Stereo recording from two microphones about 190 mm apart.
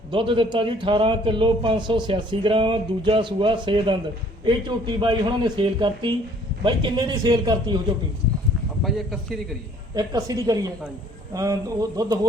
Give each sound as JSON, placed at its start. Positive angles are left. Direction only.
{"t": 0.1, "sound": "a man's voice", "side_deg": -25}
{"t": 8.8, "sound": "a man's voice", "side_deg": 0}
{"t": 9.9, "sound": "a man's voice", "side_deg": -20}